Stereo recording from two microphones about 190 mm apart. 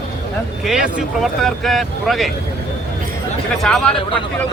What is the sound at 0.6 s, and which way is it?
Speech, centre (ahead or behind).